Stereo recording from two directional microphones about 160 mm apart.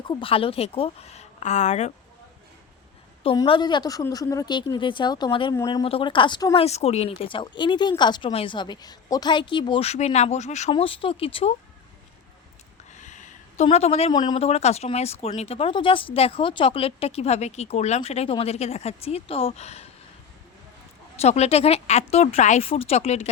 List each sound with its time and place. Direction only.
0.1 s speech: 35° left (ahead or behind)
3.3 s speech: 30° left (ahead or behind)
6.7 s speech: 40° left (ahead or behind)
13.0 s a sound: 50° left (ahead or behind)
13.7 s speech: 40° left (ahead or behind)
14.1 s speech: 25° left (ahead or behind)
14.3 s speech: 40° left (ahead or behind)
21.2 s speech: 40° left (ahead or behind)